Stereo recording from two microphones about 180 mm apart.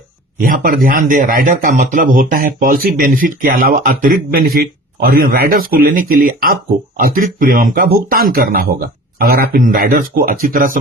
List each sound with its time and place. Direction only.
0.4 s speech: 50° right (ahead or behind)